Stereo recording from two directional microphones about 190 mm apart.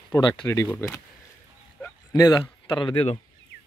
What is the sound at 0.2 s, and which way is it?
Speech, 15° left (ahead or behind).